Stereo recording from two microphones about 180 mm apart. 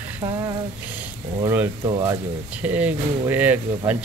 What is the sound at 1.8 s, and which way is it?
Speech, 20° right (ahead or behind).